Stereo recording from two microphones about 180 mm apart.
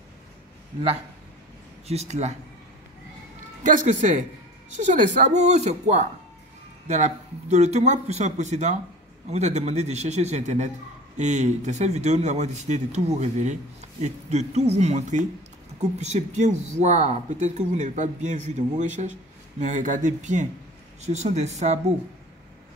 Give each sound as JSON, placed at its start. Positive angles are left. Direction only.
{"t": 1.9, "sound": "speech", "side_deg": -40}
{"t": 3.6, "sound": "speech", "side_deg": -45}